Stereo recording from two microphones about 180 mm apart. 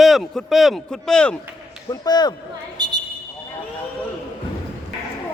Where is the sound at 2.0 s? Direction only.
25° left (ahead or behind).